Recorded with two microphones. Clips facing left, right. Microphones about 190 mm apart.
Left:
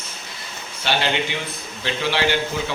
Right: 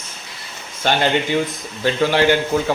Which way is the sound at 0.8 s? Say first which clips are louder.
Right 5 dB; 45° right (ahead or behind).